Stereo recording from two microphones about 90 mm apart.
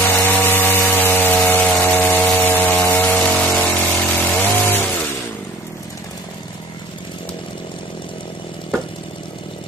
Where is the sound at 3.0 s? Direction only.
15° left (ahead or behind).